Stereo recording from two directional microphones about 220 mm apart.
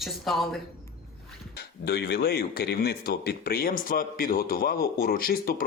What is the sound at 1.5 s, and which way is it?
Speech, 50° left (ahead or behind).